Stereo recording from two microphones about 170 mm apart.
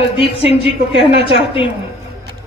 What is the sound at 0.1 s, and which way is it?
A woman's voice, 35° left (ahead or behind).